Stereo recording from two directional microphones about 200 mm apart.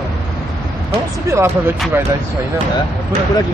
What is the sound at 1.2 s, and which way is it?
Speech, 15° right (ahead or behind).